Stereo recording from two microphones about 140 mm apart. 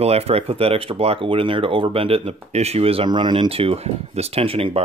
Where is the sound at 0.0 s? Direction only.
45° right (ahead or behind).